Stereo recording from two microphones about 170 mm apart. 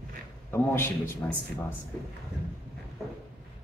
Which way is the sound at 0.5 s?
15° left (ahead or behind).